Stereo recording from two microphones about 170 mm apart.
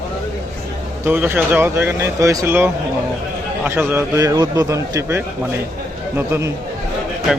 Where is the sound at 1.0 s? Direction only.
10° right (ahead or behind).